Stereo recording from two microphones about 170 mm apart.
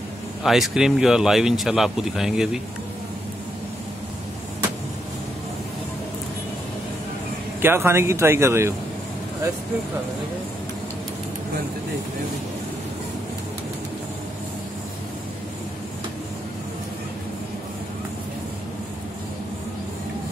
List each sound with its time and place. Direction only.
0.4 s speech: centre (ahead or behind)
7.6 s speech: 15° right (ahead or behind)